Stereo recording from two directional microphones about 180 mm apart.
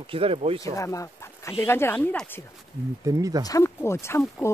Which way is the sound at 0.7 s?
15° left (ahead or behind).